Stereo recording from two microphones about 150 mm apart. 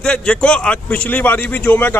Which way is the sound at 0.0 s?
5° left (ahead or behind).